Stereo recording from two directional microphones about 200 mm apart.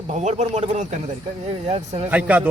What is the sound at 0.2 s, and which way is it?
Speech, 35° right (ahead or behind).